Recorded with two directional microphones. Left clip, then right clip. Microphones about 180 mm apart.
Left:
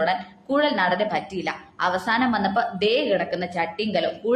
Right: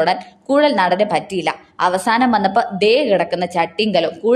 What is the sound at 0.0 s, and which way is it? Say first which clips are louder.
A woman's voice: right 6 dB; 50° right (ahead or behind).